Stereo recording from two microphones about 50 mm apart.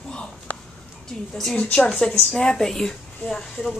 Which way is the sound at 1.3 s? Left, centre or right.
Centre.